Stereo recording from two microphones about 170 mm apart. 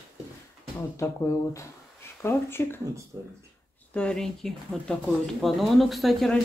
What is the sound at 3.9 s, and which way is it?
Speech, 5° left (ahead or behind).